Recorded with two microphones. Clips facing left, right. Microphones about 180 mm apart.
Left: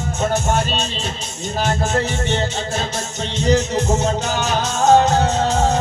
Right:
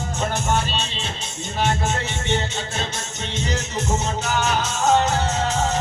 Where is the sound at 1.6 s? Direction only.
40° left (ahead or behind).